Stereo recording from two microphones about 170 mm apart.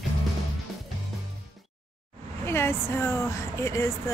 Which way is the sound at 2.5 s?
15° left (ahead or behind).